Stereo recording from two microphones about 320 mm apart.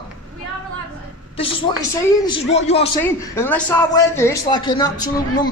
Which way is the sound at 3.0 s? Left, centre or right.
Centre.